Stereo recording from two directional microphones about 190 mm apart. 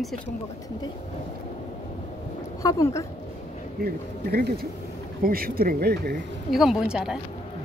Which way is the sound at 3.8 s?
55° right (ahead or behind).